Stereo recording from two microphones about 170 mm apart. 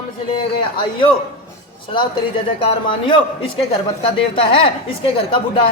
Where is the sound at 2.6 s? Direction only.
30° left (ahead or behind).